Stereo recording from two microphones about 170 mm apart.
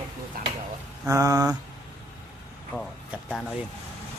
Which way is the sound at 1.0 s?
20° right (ahead or behind).